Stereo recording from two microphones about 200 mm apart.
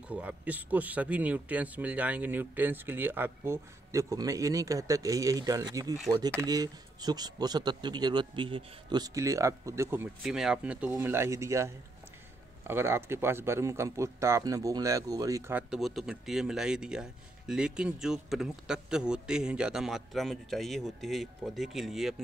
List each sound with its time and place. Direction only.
0.1 s speech: 5° right (ahead or behind)
10.2 s speech: centre (ahead or behind)